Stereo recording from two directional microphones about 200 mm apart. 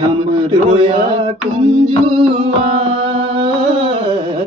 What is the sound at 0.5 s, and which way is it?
Music, 30° right (ahead or behind).